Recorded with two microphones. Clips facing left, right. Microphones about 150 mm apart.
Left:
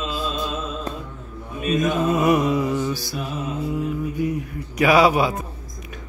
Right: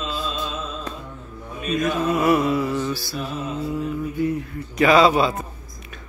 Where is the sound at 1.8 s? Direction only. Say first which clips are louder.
Left 1 dB; 20° left (ahead or behind).